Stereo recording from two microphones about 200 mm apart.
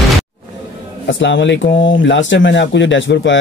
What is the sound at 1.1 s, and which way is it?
Speech, 65° left (ahead or behind).